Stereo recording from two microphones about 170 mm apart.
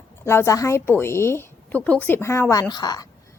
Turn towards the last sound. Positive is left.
turn(degrees=25)  # may be behind; listen again after turning